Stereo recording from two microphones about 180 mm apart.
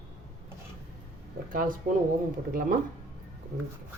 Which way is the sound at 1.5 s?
50° right (ahead or behind).